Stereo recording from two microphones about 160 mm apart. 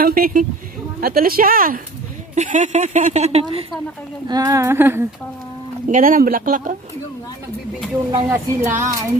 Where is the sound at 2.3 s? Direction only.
50° right (ahead or behind).